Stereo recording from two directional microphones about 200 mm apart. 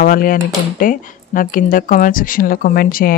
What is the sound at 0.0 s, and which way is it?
Speech, 45° left (ahead or behind).